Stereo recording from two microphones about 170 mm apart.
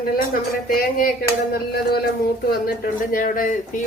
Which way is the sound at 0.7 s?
60° left (ahead or behind).